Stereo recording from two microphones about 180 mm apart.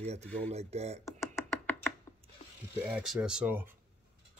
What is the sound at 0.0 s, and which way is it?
Speech, 35° right (ahead or behind).